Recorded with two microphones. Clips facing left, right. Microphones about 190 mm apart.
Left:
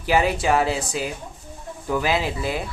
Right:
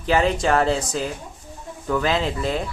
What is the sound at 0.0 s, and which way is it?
A woman's voice, 10° left (ahead or behind).